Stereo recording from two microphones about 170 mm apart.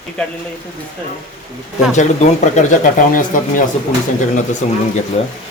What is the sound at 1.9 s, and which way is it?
Speech, 45° left (ahead or behind).